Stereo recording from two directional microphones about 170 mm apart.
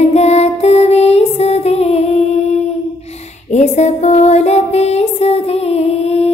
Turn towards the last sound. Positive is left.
turn(degrees=40)  # may be behind; listen again after turning